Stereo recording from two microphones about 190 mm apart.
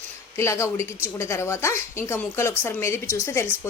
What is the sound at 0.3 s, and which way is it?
A woman's voice, 15° left (ahead or behind).